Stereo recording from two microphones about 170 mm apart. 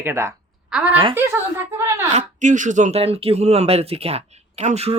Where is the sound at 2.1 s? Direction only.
45° right (ahead or behind).